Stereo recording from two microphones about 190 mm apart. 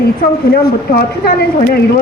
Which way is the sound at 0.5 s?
55° left (ahead or behind).